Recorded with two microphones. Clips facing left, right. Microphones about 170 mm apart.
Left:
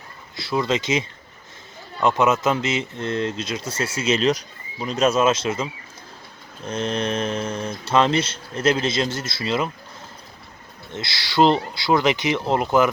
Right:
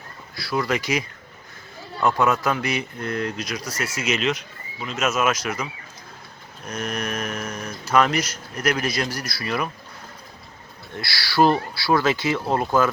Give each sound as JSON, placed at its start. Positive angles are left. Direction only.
{"t": 0.3, "sound": "speech", "side_deg": 20}
{"t": 6.7, "sound": "speech", "side_deg": 25}
{"t": 10.9, "sound": "speech", "side_deg": 20}